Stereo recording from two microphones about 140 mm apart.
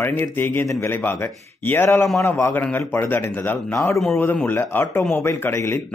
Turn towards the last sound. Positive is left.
turn(degrees=20)  # may be behind; listen again after turning